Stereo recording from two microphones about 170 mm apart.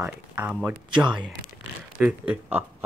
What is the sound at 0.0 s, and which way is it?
Speech, 5° right (ahead or behind).